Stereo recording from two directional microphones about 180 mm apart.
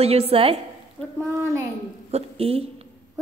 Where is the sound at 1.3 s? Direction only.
15° right (ahead or behind).